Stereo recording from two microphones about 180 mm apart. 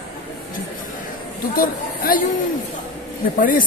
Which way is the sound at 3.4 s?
50° left (ahead or behind).